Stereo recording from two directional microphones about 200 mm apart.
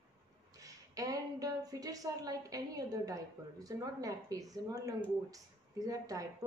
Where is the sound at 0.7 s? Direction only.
15° right (ahead or behind).